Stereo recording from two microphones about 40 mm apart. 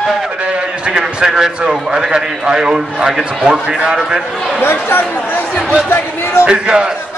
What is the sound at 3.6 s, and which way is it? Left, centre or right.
Speech, right.